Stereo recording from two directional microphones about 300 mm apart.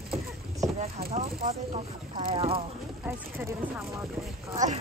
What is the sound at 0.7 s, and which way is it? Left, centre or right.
Rowboat, centre.